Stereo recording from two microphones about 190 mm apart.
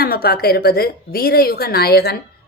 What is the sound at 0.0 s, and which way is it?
A woman's voice, 55° left (ahead or behind).